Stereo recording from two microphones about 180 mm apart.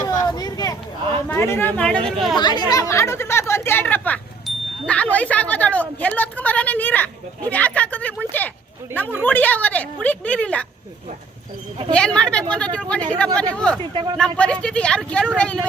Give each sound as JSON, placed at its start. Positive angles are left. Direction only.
{"t": 0.3, "sound": "vehicle", "side_deg": 20}
{"t": 1.3, "sound": "a woman's voice", "side_deg": 10}
{"t": 2.4, "sound": "a woman's voice", "side_deg": 25}
{"t": 11.9, "sound": "speech", "side_deg": 5}
{"t": 13.9, "sound": "speech", "side_deg": -25}
{"t": 14.2, "sound": "speech", "side_deg": 5}